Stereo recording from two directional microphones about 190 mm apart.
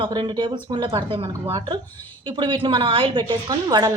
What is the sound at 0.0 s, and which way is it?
A woman's voice, 25° right (ahead or behind).